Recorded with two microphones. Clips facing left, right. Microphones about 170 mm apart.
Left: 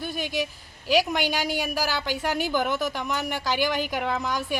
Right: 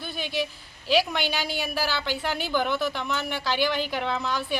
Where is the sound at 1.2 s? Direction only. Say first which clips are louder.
Left 2 dB; 45° left (ahead or behind).